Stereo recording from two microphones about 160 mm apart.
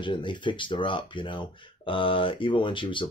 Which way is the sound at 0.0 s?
30° left (ahead or behind).